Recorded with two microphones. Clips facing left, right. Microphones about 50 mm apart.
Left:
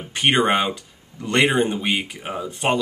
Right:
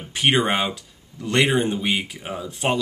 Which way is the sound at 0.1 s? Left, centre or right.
Centre.